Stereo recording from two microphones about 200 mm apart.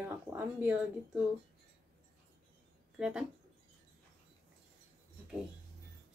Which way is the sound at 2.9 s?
5° right (ahead or behind).